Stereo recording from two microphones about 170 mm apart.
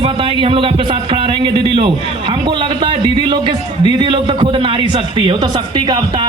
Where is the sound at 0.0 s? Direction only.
30° right (ahead or behind).